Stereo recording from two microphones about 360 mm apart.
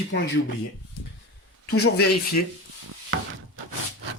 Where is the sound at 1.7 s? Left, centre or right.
Left.